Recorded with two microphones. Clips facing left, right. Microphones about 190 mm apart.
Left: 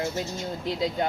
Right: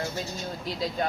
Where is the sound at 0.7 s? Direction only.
20° left (ahead or behind).